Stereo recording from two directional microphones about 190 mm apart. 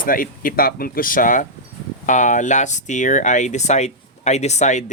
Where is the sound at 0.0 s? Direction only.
45° left (ahead or behind).